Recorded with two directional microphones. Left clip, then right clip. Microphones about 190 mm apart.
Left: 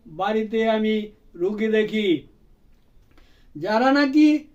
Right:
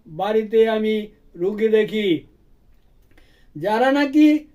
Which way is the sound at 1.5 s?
30° right (ahead or behind).